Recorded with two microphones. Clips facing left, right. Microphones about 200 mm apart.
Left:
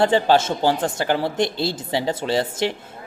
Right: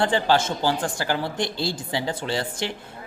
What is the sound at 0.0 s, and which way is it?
Speech, 20° left (ahead or behind).